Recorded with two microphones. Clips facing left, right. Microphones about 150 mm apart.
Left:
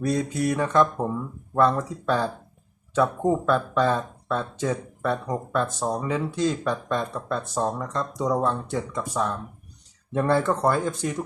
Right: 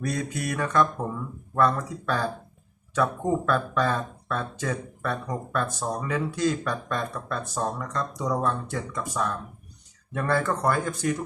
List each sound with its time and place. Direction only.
0.0 s speech: 25° left (ahead or behind)